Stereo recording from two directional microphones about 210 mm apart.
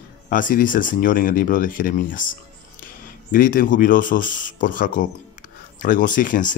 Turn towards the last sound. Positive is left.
turn(degrees=40)  # may be behind; listen again after turning